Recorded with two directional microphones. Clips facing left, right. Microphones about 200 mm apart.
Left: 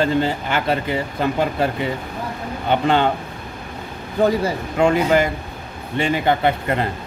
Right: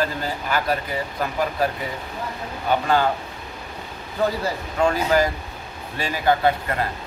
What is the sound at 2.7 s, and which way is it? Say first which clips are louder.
Speech: left 3 dB; 25° left (ahead or behind).